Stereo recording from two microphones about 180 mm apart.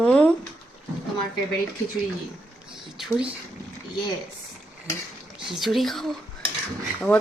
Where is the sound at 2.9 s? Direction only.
5° right (ahead or behind).